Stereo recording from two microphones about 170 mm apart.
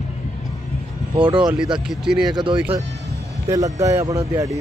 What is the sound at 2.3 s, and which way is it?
Speech, 25° right (ahead or behind).